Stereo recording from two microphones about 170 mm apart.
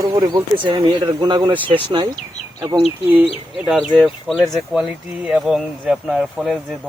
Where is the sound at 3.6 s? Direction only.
5° right (ahead or behind).